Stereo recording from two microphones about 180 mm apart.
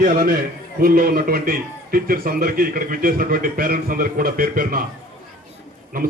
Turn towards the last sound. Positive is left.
turn(degrees=-55)  # may be behind; listen again after turning